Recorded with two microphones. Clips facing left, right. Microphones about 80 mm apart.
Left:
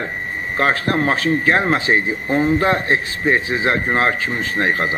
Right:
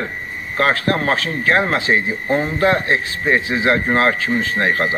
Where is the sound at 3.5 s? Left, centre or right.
Left.